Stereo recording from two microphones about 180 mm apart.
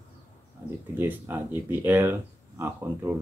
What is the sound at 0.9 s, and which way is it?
Speech, 10° right (ahead or behind).